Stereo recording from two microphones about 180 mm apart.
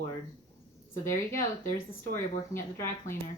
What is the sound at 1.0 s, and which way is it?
Speech, 15° left (ahead or behind).